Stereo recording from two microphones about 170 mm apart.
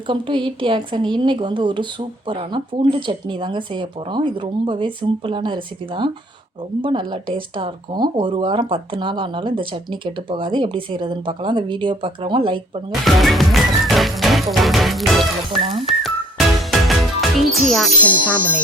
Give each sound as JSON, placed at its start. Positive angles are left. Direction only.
{"t": 0.1, "sound": "speech", "side_deg": -30}
{"t": 12.9, "sound": "music", "side_deg": 0}
{"t": 15.7, "sound": "whistling", "side_deg": 0}
{"t": 17.0, "sound": "speech", "side_deg": 0}